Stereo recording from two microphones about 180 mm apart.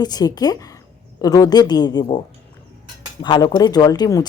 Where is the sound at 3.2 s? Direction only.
25° left (ahead or behind).